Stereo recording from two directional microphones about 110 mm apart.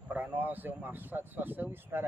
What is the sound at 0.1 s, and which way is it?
Speech, 15° right (ahead or behind).